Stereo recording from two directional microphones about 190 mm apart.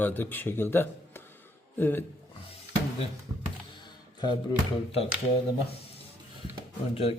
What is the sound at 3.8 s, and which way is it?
Speech, 25° left (ahead or behind).